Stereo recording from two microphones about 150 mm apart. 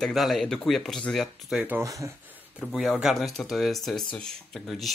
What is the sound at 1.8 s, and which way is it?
Speech, 20° right (ahead or behind).